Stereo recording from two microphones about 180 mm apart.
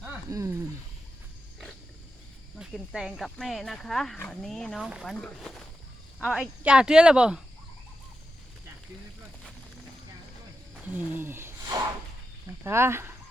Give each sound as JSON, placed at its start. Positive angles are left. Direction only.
{"t": 0.0, "sound": "a sound", "side_deg": -15}
{"t": 2.6, "sound": "speech", "side_deg": 0}
{"t": 10.9, "sound": "speech", "side_deg": -10}